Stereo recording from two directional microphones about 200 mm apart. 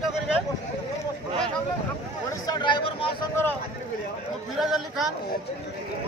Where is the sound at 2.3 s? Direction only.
20° left (ahead or behind).